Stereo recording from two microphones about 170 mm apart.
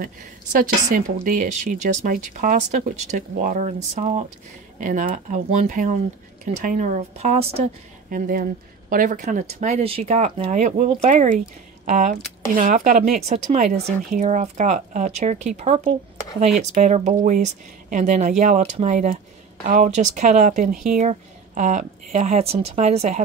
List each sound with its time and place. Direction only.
0.0 s a woman's voice: 50° right (ahead or behind)
8.1 s a woman's voice: 55° right (ahead or behind); by 23.2 s 40° right (ahead or behind)